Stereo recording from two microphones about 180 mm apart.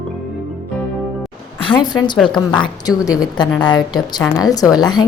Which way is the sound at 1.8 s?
25° left (ahead or behind).